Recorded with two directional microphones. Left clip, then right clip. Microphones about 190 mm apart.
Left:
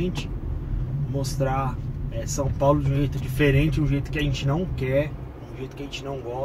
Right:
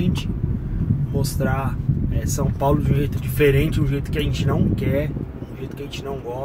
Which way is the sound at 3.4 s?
15° right (ahead or behind).